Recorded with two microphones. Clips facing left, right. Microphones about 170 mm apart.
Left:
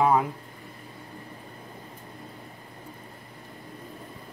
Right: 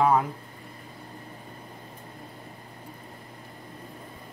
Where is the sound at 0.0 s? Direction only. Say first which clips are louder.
Even; 5° left (ahead or behind).